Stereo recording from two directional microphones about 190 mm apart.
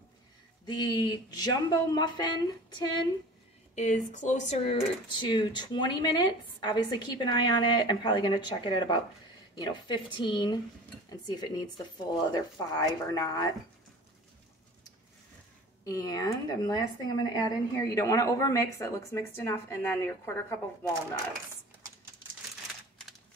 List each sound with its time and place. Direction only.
0.7 s speech: 25° left (ahead or behind)
3.7 s speech: 40° left (ahead or behind); by 13.5 s 20° left (ahead or behind)
15.8 s a woman's voice: 20° left (ahead or behind)